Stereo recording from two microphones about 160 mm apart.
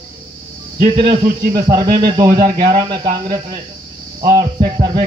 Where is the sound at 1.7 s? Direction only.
25° right (ahead or behind).